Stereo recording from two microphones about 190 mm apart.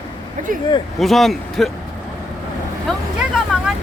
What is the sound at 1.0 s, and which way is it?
Speech, centre (ahead or behind).